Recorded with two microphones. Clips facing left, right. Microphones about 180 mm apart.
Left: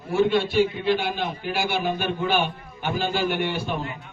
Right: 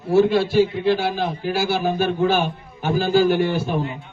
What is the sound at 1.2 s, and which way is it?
A man's voice, 35° right (ahead or behind).